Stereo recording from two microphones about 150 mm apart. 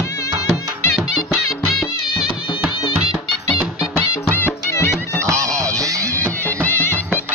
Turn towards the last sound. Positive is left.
turn(degrees=10)  # may be behind; listen again after turning